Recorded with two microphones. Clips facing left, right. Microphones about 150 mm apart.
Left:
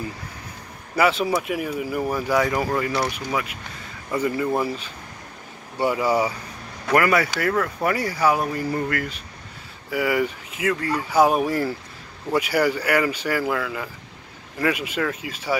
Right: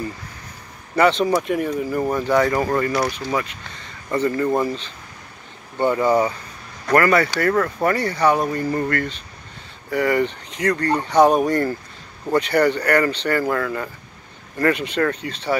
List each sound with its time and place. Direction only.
0.9 s speech: 5° left (ahead or behind)